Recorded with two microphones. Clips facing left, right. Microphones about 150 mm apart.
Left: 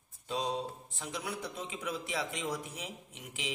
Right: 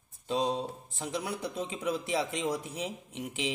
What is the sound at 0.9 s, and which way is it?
A man's voice, 30° right (ahead or behind).